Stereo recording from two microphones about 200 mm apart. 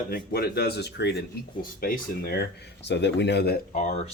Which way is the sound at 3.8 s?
35° left (ahead or behind).